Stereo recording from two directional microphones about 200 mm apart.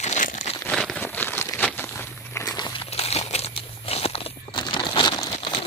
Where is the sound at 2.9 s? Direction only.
30° left (ahead or behind).